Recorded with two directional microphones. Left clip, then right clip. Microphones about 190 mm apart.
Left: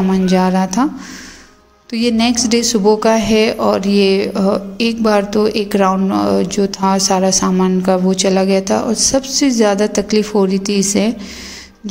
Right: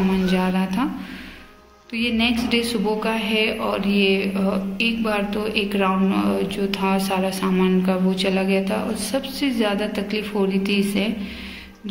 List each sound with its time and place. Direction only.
0.3 s speech: 50° left (ahead or behind)
1.9 s speech: 50° left (ahead or behind)